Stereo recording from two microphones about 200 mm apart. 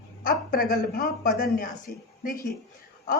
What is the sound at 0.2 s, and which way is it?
A woman's voice, 45° left (ahead or behind).